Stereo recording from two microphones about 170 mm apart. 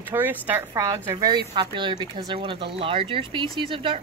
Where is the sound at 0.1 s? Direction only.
10° right (ahead or behind).